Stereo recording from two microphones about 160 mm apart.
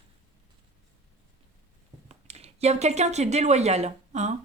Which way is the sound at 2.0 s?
40° right (ahead or behind).